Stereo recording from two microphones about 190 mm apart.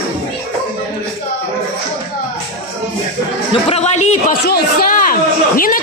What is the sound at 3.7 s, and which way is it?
Speech, 35° left (ahead or behind).